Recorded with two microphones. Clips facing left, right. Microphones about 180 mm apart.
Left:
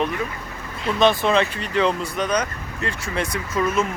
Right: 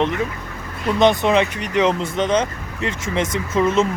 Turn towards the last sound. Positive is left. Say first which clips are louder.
# right 4 dB
turn(degrees=-25)  # may be behind; listen again after turning